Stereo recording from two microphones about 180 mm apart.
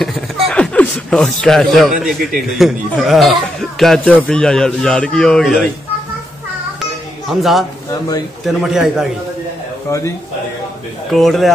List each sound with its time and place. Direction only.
0.5 s speech: 5° left (ahead or behind)
6.8 s children playing: centre (ahead or behind)
8.6 s speech: 5° right (ahead or behind)
9.8 s speech: 15° left (ahead or behind)
11.1 s speech: centre (ahead or behind)